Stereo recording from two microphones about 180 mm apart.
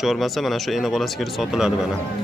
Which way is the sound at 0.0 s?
Centre (ahead or behind).